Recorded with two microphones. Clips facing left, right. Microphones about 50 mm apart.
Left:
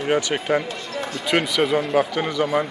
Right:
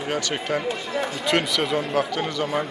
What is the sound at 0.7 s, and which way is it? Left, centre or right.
Basketball bounce, centre.